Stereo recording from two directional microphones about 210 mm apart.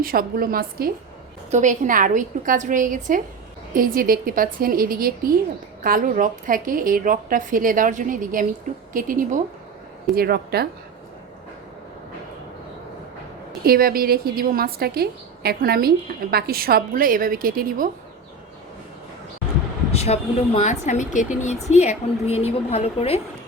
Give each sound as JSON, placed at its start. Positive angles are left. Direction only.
{"t": 0.0, "sound": "a woman's voice", "side_deg": -45}
{"t": 13.7, "sound": "a woman's voice", "side_deg": -45}
{"t": 19.9, "sound": "a woman's voice", "side_deg": 30}